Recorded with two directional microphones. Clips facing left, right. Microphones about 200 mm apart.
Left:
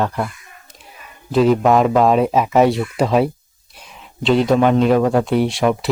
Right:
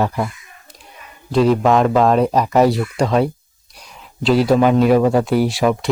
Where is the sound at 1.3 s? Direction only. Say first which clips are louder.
Even; centre (ahead or behind).